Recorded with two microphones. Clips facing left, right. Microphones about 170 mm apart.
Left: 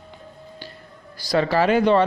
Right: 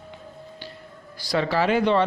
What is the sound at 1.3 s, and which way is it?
Speech, 45° left (ahead or behind).